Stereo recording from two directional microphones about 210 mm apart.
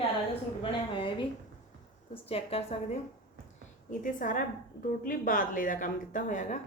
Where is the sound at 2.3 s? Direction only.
30° left (ahead or behind).